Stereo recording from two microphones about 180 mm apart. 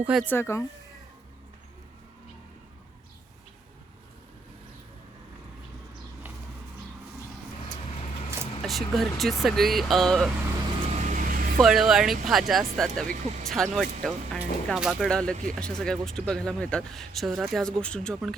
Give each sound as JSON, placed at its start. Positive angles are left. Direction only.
{"t": 0.0, "sound": "speech", "side_deg": -5}
{"t": 0.3, "sound": "speech", "side_deg": 15}
{"t": 8.6, "sound": "speech", "side_deg": 0}
{"t": 10.8, "sound": "vehicle", "side_deg": -40}
{"t": 11.5, "sound": "speech", "side_deg": -5}
{"t": 13.1, "sound": "speech", "side_deg": -40}
{"t": 13.7, "sound": "speech", "side_deg": 0}